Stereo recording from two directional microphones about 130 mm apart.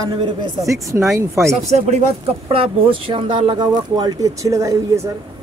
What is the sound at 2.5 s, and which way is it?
Speech, 45° right (ahead or behind).